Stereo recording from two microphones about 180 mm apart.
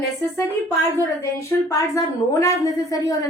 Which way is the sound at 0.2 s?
15° left (ahead or behind).